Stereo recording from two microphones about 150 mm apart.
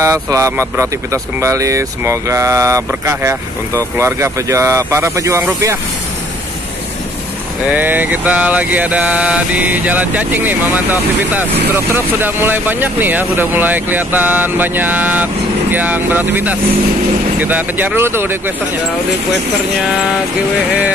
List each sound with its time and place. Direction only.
0.0 s speech: 20° right (ahead or behind)
7.6 s mantra: 10° right (ahead or behind)